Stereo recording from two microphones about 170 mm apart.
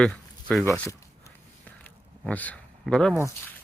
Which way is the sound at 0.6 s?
20° left (ahead or behind).